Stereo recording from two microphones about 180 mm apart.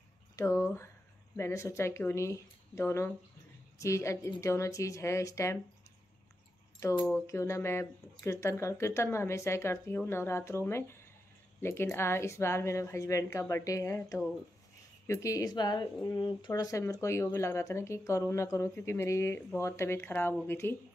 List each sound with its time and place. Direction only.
0.4 s a woman's voice: 15° left (ahead or behind)
6.8 s a woman's voice: 15° left (ahead or behind)